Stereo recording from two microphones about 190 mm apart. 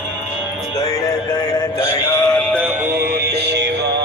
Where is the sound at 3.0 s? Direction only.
60° right (ahead or behind).